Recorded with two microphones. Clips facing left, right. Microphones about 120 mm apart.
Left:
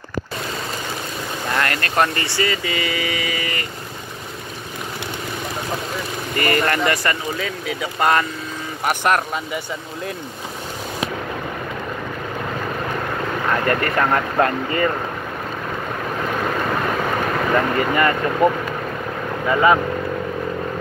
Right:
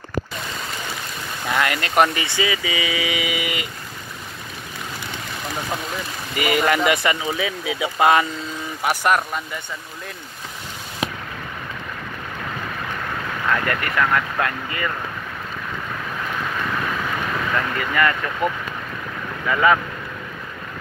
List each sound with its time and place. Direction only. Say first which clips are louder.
1.5 s vehicle: right 1 dB; 5° right (ahead or behind)
1.8 s speech: right 1 dB; 15° right (ahead or behind)
6.3 s speech: even; 5° right (ahead or behind)
13.5 s speech: left 2 dB; 35° left (ahead or behind)
17.6 s speech: left 3 dB; 30° left (ahead or behind)